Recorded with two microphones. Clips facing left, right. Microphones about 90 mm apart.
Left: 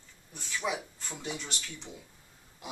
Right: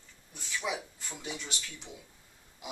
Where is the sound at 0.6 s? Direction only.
40° left (ahead or behind).